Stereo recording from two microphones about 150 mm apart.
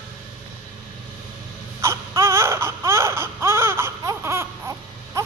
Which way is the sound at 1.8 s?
20° right (ahead or behind).